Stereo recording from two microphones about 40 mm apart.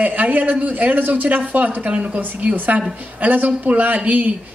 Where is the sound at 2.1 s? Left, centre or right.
Right.